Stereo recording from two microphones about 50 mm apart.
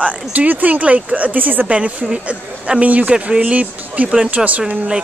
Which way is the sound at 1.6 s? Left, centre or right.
Right.